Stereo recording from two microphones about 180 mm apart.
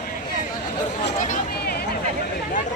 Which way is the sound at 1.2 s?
55° left (ahead or behind).